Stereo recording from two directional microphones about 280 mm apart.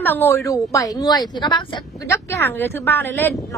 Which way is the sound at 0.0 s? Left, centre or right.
Centre.